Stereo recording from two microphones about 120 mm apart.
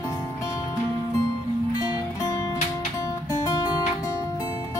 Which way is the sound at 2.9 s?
30° left (ahead or behind).